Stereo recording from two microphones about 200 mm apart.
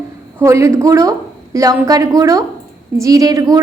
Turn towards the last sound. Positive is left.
turn(degrees=-20)  # may be behind; listen again after turning